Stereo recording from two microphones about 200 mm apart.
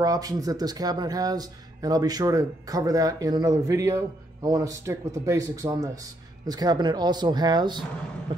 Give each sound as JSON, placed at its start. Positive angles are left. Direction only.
{"t": 0.0, "sound": "speech", "side_deg": -20}